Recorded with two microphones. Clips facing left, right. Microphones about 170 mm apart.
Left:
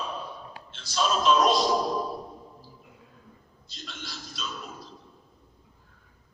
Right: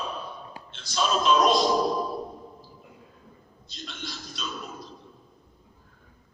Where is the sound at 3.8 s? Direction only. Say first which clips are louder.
Right 2 dB; centre (ahead or behind).